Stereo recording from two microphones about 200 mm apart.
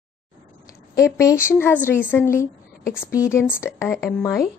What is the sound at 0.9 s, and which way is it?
A woman's voice, 15° left (ahead or behind).